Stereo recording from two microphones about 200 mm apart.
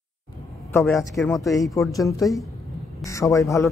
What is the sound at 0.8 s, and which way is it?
Speech, centre (ahead or behind).